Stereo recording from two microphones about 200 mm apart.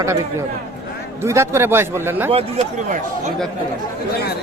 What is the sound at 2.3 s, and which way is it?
Speech, 30° right (ahead or behind).